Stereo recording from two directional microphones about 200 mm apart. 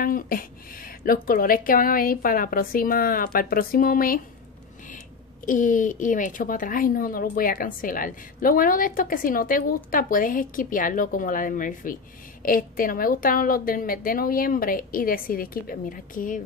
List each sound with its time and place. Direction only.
0.0 s a woman's voice: 45° left (ahead or behind)
5.4 s a woman's voice: 40° left (ahead or behind)